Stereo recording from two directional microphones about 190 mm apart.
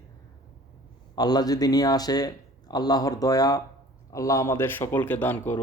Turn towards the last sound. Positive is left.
turn(degrees=10)  # may be behind; listen again after turning